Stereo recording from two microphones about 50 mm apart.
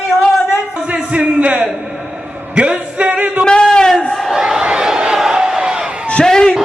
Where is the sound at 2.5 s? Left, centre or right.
Right.